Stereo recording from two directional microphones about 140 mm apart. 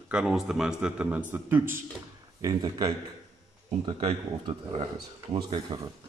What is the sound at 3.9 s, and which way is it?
A man's voice, 40° right (ahead or behind).